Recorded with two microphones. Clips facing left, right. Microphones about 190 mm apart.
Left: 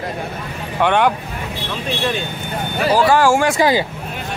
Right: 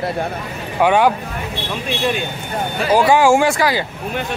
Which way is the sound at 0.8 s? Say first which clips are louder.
Right 2 dB; 5° right (ahead or behind).